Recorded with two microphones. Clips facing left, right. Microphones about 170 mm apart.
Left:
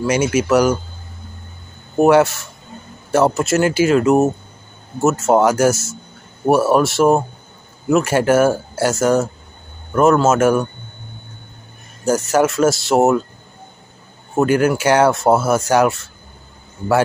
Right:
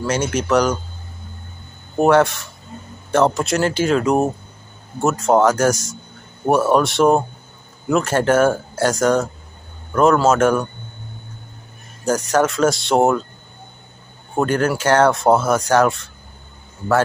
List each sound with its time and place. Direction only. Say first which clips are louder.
0.0 s speech: left 4 dB; 10° left (ahead or behind)
2.0 s speech: left 2 dB; 5° left (ahead or behind)
12.0 s speech: left 2 dB; 5° left (ahead or behind)
14.3 s speech: left 3 dB; 5° left (ahead or behind)